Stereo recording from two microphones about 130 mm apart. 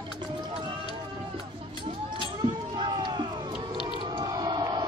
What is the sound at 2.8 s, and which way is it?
Crowd, 35° right (ahead or behind).